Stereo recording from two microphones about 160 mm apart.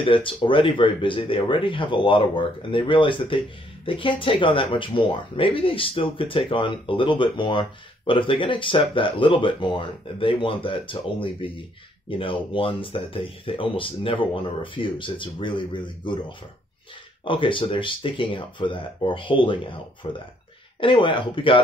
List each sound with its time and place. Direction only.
0.0 s speech: 30° left (ahead or behind)